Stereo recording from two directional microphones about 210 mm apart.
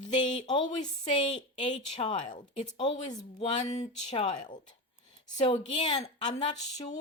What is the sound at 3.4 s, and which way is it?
Speech, 30° left (ahead or behind).